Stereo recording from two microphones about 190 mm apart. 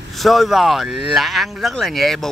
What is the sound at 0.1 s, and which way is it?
A man's voice, centre (ahead or behind).